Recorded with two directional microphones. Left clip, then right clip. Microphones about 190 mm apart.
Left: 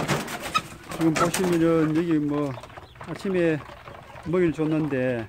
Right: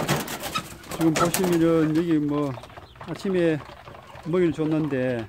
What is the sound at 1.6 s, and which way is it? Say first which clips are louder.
Speech: right 1 dB; 5° right (ahead or behind).